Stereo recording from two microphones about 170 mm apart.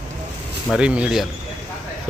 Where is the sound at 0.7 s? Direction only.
5° right (ahead or behind).